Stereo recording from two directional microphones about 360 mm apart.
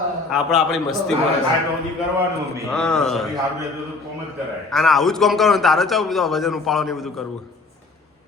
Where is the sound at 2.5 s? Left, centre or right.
Centre.